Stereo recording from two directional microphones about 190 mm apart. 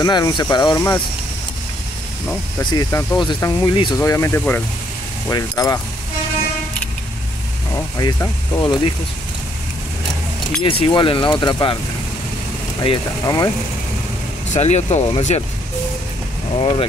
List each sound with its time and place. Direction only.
0.0 s speech: 20° left (ahead or behind)
2.6 s speech: 20° left (ahead or behind)
7.7 s speech: 20° left (ahead or behind)
10.6 s speech: 25° left (ahead or behind)
12.8 s speech: 25° left (ahead or behind)
14.5 s speech: 35° left (ahead or behind)
16.5 s speech: 30° left (ahead or behind)